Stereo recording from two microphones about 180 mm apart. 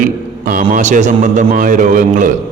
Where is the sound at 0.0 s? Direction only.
50° right (ahead or behind).